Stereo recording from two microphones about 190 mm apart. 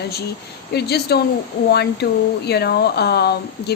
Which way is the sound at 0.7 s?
60° left (ahead or behind).